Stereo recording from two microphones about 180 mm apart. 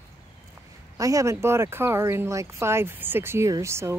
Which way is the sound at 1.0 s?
20° right (ahead or behind).